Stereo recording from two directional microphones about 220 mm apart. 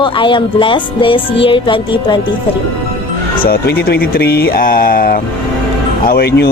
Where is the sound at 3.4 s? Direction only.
45° left (ahead or behind).